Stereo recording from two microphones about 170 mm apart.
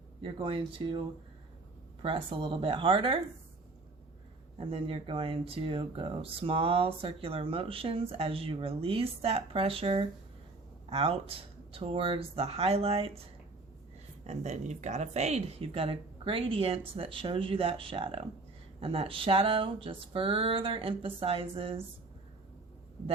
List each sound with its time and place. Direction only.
0.2 s speech: 30° right (ahead or behind)
4.5 s speech: 30° right (ahead or behind)
14.3 s speech: 40° right (ahead or behind)